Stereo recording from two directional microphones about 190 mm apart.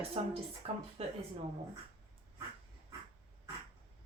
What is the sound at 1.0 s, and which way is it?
Speech, 35° right (ahead or behind).